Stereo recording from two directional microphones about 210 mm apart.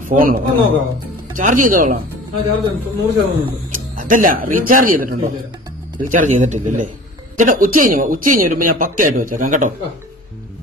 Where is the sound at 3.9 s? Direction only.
40° right (ahead or behind).